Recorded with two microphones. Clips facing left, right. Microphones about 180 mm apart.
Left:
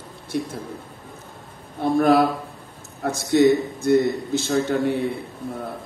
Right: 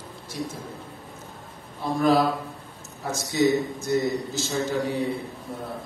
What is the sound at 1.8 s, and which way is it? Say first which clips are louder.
A man's voice: left 4 dB; 60° left (ahead or behind).